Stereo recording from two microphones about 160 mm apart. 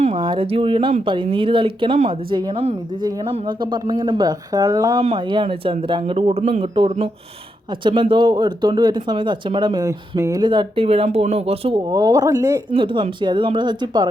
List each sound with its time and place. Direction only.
0.2 s speech: 30° right (ahead or behind)
11.9 s speech: 20° right (ahead or behind)
12.7 s speech: 30° right (ahead or behind)